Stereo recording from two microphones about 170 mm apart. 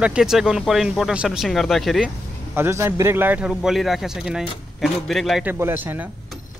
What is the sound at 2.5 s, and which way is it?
A man's voice, 15° right (ahead or behind).